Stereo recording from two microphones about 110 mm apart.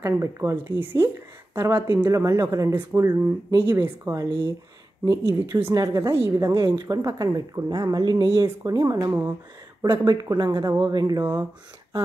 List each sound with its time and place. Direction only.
0.0 s speech: 25° right (ahead or behind)